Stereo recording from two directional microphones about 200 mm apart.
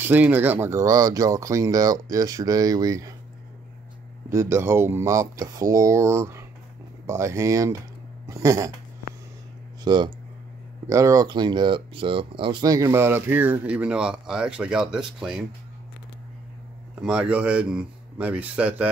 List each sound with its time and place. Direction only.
0.0 s speech: 10° right (ahead or behind)
4.3 s speech: 15° right (ahead or behind)
9.8 s speech: 20° right (ahead or behind); by 15.4 s 5° right (ahead or behind)
17.0 s speech: 5° right (ahead or behind)